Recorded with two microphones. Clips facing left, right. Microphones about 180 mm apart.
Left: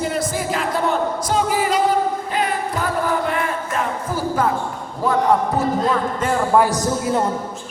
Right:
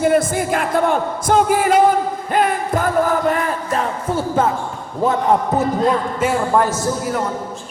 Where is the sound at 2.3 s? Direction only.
50° right (ahead or behind).